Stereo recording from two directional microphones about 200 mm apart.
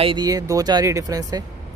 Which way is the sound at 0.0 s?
20° right (ahead or behind).